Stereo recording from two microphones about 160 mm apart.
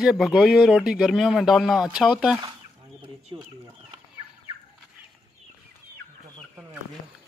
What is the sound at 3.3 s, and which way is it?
Speech, 25° right (ahead or behind).